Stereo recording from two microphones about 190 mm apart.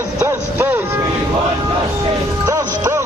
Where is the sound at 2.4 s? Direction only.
15° right (ahead or behind).